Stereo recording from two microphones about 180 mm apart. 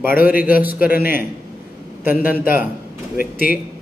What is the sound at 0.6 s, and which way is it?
Speech, 10° right (ahead or behind).